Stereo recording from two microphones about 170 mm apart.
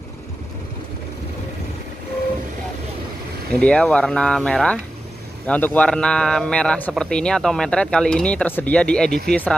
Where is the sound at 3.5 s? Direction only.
5° left (ahead or behind).